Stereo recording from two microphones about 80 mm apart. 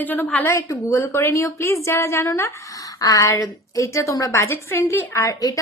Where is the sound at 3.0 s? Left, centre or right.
Left.